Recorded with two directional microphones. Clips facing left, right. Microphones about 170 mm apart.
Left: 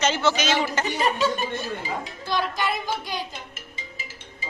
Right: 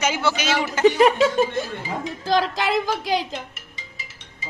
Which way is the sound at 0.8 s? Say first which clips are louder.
Right 8 dB; 90° right.